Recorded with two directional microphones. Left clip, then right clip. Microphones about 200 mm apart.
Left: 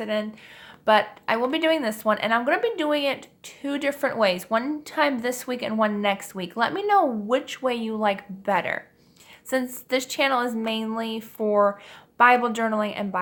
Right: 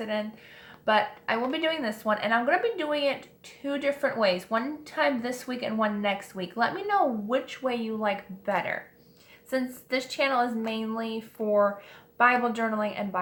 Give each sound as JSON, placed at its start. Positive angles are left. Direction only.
{"t": 0.0, "sound": "speech", "side_deg": 45}